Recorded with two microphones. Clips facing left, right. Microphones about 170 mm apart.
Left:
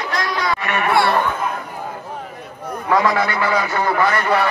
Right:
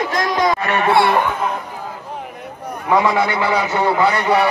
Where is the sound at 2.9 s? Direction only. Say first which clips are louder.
Right 2 dB; 15° right (ahead or behind).